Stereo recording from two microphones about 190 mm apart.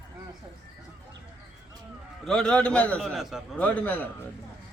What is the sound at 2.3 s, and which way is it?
A man's voice, 5° left (ahead or behind).